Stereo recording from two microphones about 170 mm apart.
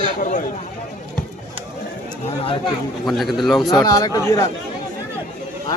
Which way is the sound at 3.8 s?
20° left (ahead or behind).